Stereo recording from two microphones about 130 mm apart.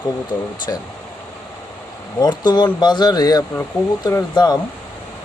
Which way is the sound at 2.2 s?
35° left (ahead or behind).